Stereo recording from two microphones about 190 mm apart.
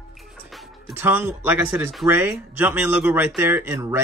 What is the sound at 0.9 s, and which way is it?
Speech, 10° right (ahead or behind).